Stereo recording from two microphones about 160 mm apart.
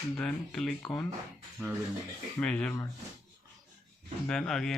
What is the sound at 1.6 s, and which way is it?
Speech, 10° right (ahead or behind).